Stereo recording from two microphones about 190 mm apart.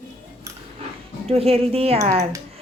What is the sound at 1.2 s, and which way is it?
Speech, 30° right (ahead or behind).